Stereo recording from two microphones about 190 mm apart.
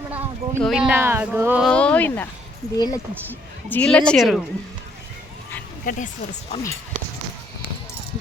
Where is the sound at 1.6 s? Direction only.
5° left (ahead or behind).